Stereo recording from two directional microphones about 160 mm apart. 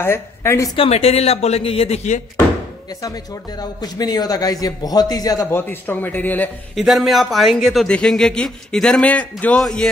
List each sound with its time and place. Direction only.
0.0 s a woman's voice: 15° left (ahead or behind)
0.7 s a woman's voice: 40° left (ahead or behind)
3.8 s a man's voice: 25° left (ahead or behind)
6.7 s speech: centre (ahead or behind)